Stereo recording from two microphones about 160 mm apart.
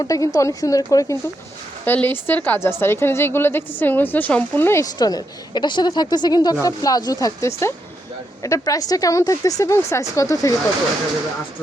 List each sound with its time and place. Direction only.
0.0 s a woman's voice: 20° left (ahead or behind)